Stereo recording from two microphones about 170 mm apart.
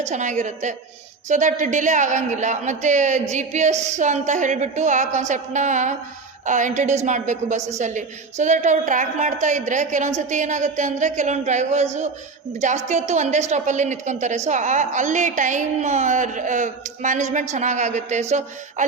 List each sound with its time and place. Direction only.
0.0 s a woman's voice: 45° right (ahead or behind)